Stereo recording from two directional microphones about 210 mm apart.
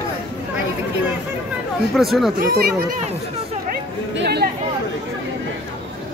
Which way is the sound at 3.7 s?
50° right (ahead or behind).